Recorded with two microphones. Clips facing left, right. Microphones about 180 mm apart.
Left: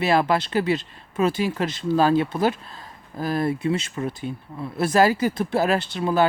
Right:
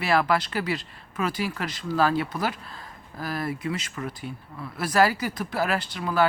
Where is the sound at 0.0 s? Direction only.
20° left (ahead or behind).